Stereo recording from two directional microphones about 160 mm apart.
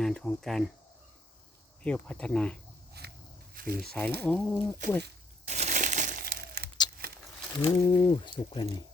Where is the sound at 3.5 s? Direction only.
65° right (ahead or behind).